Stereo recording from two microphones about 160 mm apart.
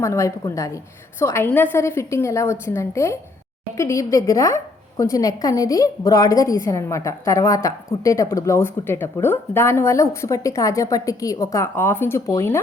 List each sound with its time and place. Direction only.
0.0 s a woman's voice: 20° left (ahead or behind)